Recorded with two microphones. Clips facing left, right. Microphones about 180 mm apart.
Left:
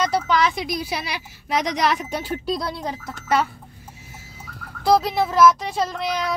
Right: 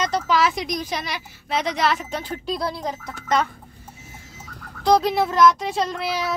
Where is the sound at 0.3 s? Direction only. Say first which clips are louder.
Even; centre (ahead or behind).